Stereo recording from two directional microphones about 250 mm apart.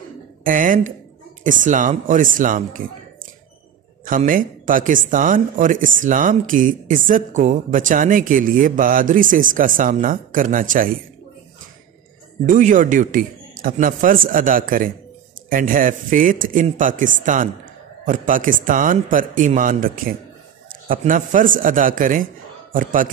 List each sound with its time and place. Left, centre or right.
0.4 s speech: right
4.0 s speech: right
12.4 s a man's voice: right